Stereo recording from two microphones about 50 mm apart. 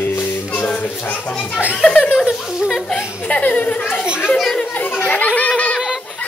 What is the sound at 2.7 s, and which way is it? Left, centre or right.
Chuckle, centre.